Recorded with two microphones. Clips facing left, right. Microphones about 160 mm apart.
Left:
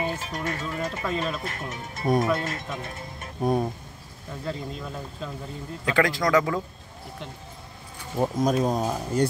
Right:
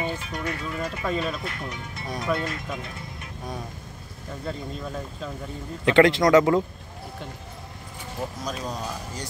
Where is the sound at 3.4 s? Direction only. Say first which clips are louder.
Left 12 dB; 50° left (ahead or behind).